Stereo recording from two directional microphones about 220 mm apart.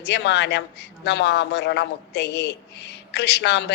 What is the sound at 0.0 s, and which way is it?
A woman's voice, 50° left (ahead or behind).